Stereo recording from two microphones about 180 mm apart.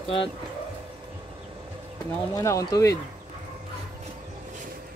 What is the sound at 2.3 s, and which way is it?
Speech, 20° left (ahead or behind).